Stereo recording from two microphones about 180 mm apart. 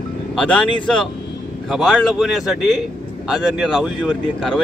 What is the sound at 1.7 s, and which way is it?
Speech, centre (ahead or behind).